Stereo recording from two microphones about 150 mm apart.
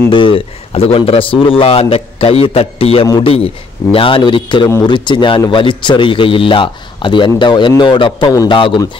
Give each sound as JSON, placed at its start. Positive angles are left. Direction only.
{"t": 0.1, "sound": "a man's voice", "side_deg": 35}